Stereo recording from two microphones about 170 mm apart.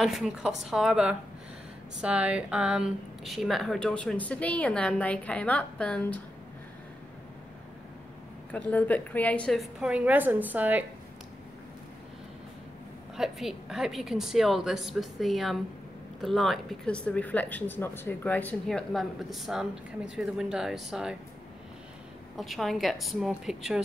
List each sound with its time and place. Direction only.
0.0 s speech: centre (ahead or behind)
8.5 s speech: 10° left (ahead or behind); by 10.9 s 10° right (ahead or behind)
13.1 s speech: centre (ahead or behind)
22.4 s speech: centre (ahead or behind)